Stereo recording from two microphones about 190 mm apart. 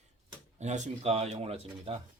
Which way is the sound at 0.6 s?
35° right (ahead or behind).